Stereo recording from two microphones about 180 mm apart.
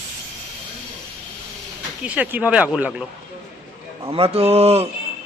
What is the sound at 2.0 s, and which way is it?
Speech, 10° right (ahead or behind).